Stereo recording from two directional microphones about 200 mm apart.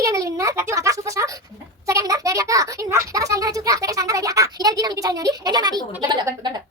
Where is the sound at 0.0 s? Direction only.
15° right (ahead or behind).